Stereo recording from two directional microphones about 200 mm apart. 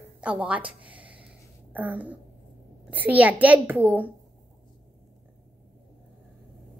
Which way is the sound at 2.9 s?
10° right (ahead or behind).